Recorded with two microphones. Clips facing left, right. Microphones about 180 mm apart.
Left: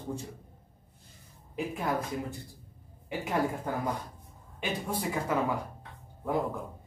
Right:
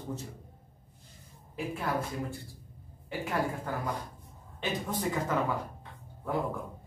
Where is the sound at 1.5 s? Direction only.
20° left (ahead or behind).